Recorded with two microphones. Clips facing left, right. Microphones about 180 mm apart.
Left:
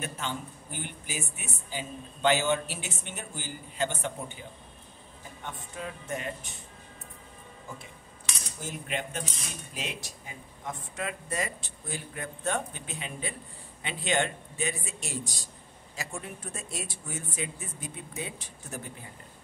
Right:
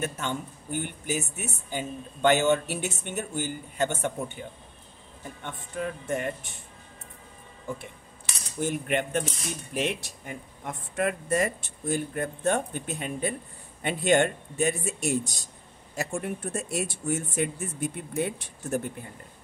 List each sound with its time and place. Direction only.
0.0 s speech: 50° right (ahead or behind)
8.5 s speech: 60° right (ahead or behind)